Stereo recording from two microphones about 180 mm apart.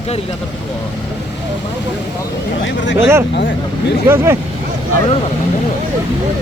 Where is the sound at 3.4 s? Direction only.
70° left (ahead or behind).